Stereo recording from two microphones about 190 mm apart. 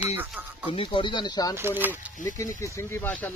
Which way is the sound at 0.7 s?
25° left (ahead or behind).